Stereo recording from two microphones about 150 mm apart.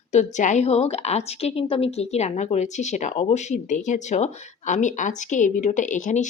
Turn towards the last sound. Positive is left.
turn(degrees=55)  # may be behind; listen again after turning